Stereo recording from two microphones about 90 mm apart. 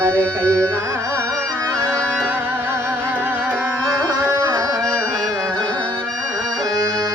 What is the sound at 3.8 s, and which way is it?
Music, 40° right (ahead or behind).